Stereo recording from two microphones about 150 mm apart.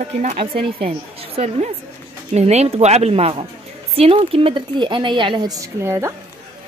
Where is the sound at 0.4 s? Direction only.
40° right (ahead or behind).